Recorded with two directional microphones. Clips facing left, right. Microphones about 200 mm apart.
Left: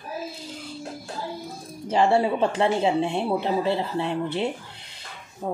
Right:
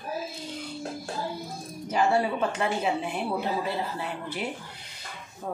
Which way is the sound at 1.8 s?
30° left (ahead or behind).